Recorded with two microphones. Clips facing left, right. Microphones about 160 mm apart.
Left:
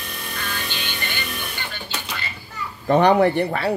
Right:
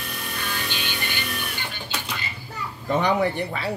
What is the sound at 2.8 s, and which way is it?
Speech, 65° left (ahead or behind).